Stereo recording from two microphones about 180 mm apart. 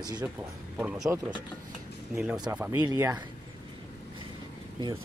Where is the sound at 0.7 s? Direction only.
5° right (ahead or behind).